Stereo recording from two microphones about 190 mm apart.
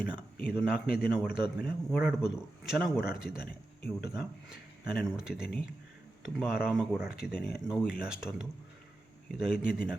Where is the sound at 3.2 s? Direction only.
5° right (ahead or behind).